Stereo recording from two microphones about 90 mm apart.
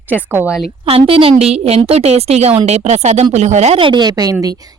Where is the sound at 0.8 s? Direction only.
90° right.